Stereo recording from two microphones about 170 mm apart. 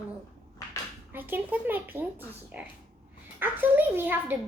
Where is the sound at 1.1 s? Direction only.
10° right (ahead or behind).